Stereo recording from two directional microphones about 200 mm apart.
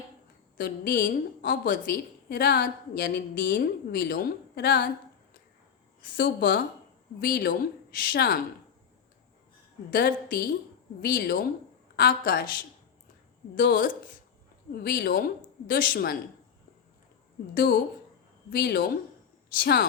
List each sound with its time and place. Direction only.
0.5 s a woman's voice: 45° left (ahead or behind)
6.0 s a woman's voice: 45° left (ahead or behind)
9.9 s a woman's voice: 45° left (ahead or behind)
13.6 s a woman's voice: 45° left (ahead or behind)
17.5 s a woman's voice: 45° left (ahead or behind)